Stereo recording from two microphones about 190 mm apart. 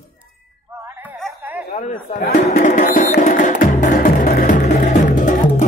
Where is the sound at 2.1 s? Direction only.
55° left (ahead or behind).